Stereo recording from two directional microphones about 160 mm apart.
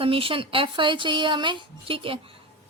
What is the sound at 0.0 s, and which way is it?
Speech, 35° right (ahead or behind).